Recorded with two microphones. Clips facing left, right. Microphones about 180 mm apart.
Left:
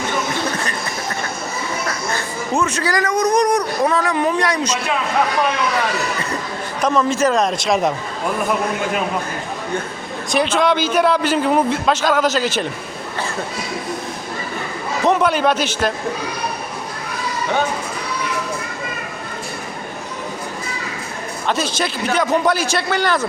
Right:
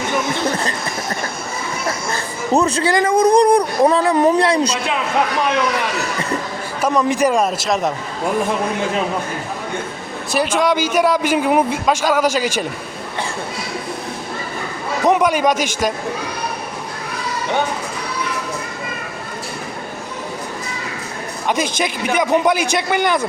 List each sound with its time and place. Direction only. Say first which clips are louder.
2.5 s speech: right 4 dB; 35° right (ahead or behind)
6.8 s a man's voice: right 1 dB; 15° right (ahead or behind)
10.3 s a man's voice: even; 10° right (ahead or behind)
15.0 s a man's voice: right 1 dB; 15° right (ahead or behind)
21.4 s a man's voice: right 1 dB; 15° right (ahead or behind)